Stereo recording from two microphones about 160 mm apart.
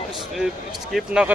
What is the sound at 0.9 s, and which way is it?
Speech, 5° right (ahead or behind).